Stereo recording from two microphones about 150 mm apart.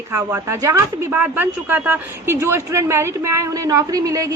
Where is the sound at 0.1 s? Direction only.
20° right (ahead or behind).